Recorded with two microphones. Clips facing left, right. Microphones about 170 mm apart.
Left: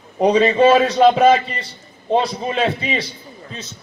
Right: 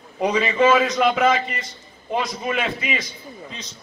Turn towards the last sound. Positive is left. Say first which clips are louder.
# left 5 dB
turn(degrees=35)  # may be behind; listen again after turning